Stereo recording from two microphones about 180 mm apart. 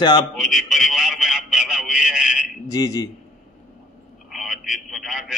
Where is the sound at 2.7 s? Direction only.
20° left (ahead or behind).